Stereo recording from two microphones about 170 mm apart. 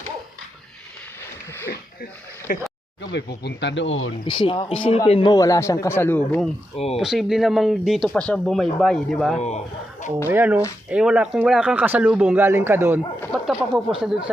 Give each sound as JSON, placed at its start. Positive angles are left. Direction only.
{"t": 2.5, "sound": "speech", "side_deg": 50}
{"t": 3.0, "sound": "speech", "side_deg": 90}
{"t": 4.3, "sound": "speech", "side_deg": 30}
{"t": 5.3, "sound": "speech", "side_deg": 20}
{"t": 6.7, "sound": "speech", "side_deg": 35}
{"t": 7.0, "sound": "speech", "side_deg": 0}
{"t": 9.4, "sound": "speech", "side_deg": 40}
{"t": 10.2, "sound": "speech", "side_deg": -10}
{"t": 13.3, "sound": "speech", "side_deg": 0}